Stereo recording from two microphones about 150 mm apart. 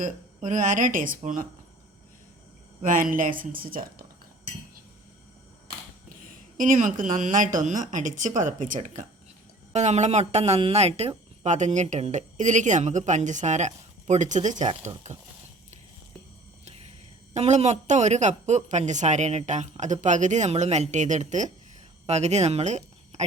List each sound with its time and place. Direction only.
0.0 s speech: 55° right (ahead or behind)
2.8 s speech: 65° right (ahead or behind)
6.1 s speech: 60° right (ahead or behind)
17.3 s speech: 45° right (ahead or behind)